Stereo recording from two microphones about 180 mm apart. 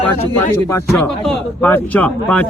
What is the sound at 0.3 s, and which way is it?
Speech, 15° left (ahead or behind).